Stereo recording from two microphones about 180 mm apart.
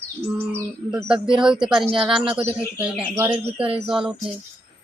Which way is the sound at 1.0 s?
5° right (ahead or behind).